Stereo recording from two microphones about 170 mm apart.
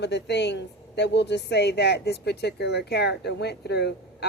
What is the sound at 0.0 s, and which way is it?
Speech, 90° left.